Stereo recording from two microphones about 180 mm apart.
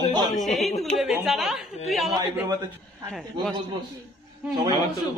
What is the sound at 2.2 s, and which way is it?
Speech, 20° right (ahead or behind).